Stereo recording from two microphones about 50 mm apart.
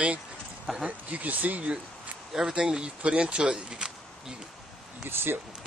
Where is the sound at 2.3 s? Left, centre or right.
Centre.